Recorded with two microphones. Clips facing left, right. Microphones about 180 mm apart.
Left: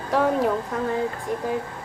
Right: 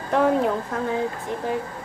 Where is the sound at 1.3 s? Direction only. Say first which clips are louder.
Left 2 dB; 45° left (ahead or behind).